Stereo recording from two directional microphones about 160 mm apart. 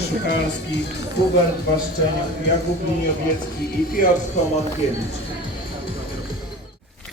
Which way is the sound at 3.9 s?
60° left (ahead or behind).